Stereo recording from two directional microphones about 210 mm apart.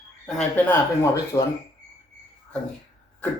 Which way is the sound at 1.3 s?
20° left (ahead or behind).